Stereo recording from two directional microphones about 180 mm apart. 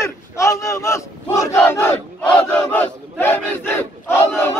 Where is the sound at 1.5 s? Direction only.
10° left (ahead or behind).